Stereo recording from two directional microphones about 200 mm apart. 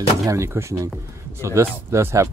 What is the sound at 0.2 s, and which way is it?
Speech, 15° right (ahead or behind).